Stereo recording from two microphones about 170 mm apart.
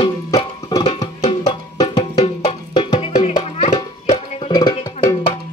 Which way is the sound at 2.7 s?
30° left (ahead or behind).